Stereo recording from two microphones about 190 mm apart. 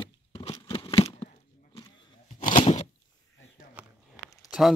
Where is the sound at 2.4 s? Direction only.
45° left (ahead or behind).